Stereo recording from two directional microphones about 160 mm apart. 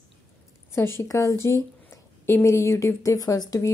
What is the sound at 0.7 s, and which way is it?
A woman's voice, 15° left (ahead or behind).